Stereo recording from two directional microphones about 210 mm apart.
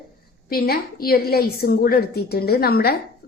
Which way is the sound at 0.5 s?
45° left (ahead or behind).